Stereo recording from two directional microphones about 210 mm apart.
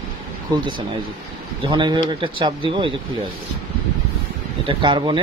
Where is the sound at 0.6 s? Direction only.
20° right (ahead or behind).